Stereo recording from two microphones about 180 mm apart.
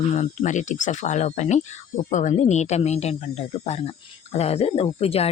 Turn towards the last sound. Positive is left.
turn(degrees=35)  # may be behind; listen again after turning